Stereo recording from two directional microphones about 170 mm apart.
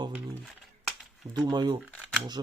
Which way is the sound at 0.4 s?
Centre (ahead or behind).